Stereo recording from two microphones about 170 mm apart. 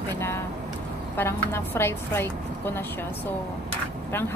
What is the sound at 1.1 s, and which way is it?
A woman's voice, 15° left (ahead or behind).